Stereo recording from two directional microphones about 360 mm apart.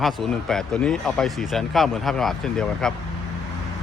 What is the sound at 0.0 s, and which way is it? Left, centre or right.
Speech, centre.